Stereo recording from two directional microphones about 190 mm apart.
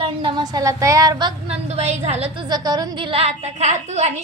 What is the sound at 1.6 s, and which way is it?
A woman's voice, 35° right (ahead or behind).